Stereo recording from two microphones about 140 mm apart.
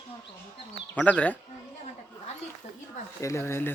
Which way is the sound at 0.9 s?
10° left (ahead or behind).